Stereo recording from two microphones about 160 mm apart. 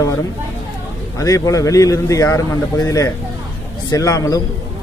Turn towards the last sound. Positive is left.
turn(degrees=20)  # may be behind; listen again after turning